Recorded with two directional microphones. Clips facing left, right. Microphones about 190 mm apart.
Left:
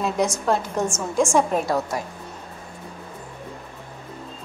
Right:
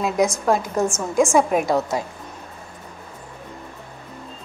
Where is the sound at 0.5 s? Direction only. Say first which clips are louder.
Right 3 dB; 10° right (ahead or behind).